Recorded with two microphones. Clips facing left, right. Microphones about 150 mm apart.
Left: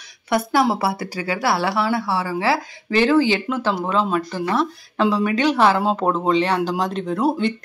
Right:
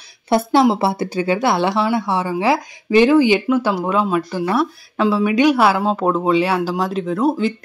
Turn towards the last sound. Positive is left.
turn(degrees=0)  # may be behind; listen again after turning